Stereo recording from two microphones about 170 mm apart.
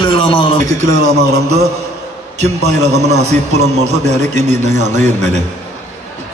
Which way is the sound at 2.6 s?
40° right (ahead or behind).